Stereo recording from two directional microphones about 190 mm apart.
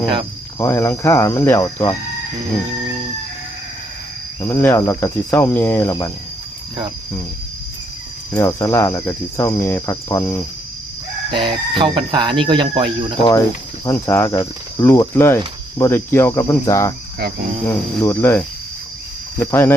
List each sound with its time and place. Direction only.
0.6 s speech: 15° left (ahead or behind)
4.4 s speech: 15° left (ahead or behind)
8.4 s speech: 15° left (ahead or behind)
11.3 s speech: 25° right (ahead or behind)
13.8 s speech: 15° left (ahead or behind)